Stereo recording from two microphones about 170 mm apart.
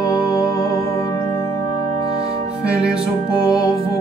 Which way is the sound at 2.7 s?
5° right (ahead or behind).